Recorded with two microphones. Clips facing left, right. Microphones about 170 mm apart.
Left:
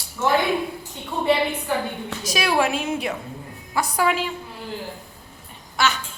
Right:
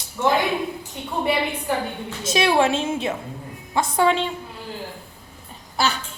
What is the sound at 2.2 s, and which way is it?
A woman's voice, 25° right (ahead or behind).